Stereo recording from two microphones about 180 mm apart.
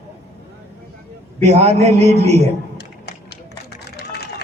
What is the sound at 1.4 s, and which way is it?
A man's voice, 35° right (ahead or behind).